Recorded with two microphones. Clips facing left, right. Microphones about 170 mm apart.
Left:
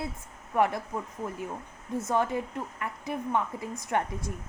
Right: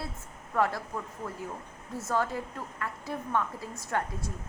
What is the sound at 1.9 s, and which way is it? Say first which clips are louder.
A woman's voice: left 3 dB; 20° left (ahead or behind).